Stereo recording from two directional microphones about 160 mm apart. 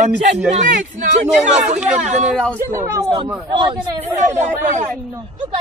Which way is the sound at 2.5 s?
20° right (ahead or behind).